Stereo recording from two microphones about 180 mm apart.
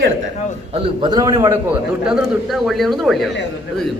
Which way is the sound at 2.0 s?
5° right (ahead or behind).